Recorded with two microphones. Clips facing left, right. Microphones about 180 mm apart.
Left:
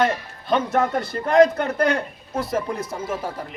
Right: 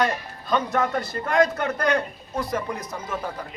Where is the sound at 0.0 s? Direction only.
25° left (ahead or behind).